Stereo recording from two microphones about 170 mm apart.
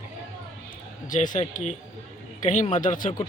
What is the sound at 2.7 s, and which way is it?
Speech, 50° left (ahead or behind).